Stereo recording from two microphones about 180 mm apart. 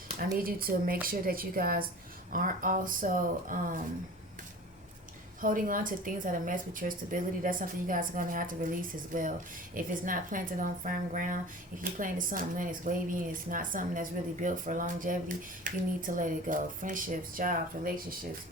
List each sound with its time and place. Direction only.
0.3 s speech: 55° right (ahead or behind)
5.4 s speech: 50° right (ahead or behind)
9.7 s speech: 50° right (ahead or behind)